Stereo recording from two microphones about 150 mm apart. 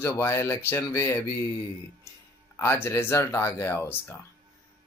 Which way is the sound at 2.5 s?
15° left (ahead or behind).